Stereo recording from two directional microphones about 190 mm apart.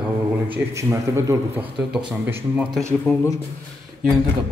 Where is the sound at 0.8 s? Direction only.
15° right (ahead or behind).